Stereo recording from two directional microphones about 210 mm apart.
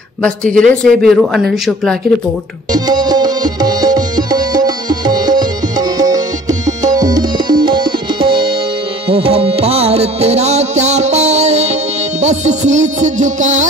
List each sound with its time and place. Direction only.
0.2 s speech: 5° left (ahead or behind)
2.7 s music: 20° right (ahead or behind); by 13.7 s 35° right (ahead or behind)